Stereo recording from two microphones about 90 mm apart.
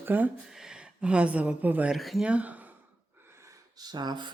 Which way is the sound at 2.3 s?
15° right (ahead or behind).